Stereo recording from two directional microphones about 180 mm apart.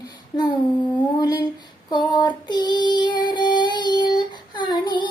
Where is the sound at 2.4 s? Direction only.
25° left (ahead or behind).